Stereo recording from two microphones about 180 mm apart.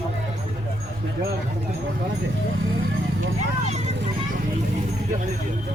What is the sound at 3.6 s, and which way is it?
Clip-clop, 40° right (ahead or behind).